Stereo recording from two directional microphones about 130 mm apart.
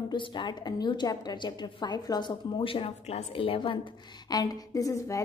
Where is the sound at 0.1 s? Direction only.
35° left (ahead or behind).